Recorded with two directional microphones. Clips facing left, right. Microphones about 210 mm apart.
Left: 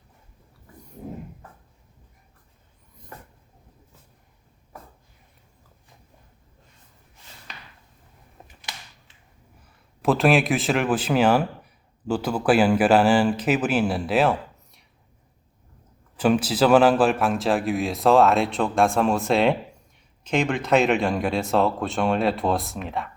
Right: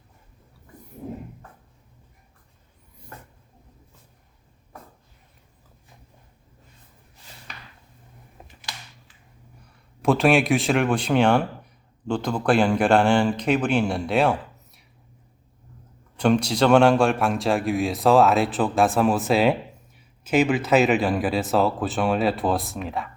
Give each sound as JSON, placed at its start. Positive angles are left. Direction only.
{"t": 9.6, "sound": "a man's voice", "side_deg": 0}
{"t": 16.1, "sound": "speech", "side_deg": 5}